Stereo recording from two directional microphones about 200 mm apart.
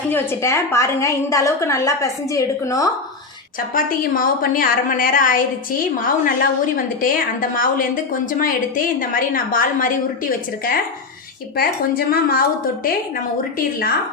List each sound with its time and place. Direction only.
0.1 s a woman's voice: 15° left (ahead or behind)
3.8 s a woman's voice: 45° left (ahead or behind)
11.5 s a woman's voice: 50° left (ahead or behind)